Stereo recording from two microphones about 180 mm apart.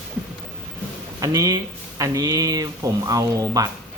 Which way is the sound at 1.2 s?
20° right (ahead or behind).